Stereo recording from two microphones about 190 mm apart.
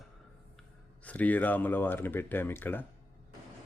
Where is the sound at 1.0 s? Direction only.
10° left (ahead or behind).